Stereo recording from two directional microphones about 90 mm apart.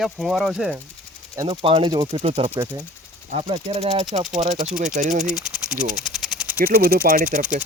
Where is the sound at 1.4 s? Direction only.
85° right.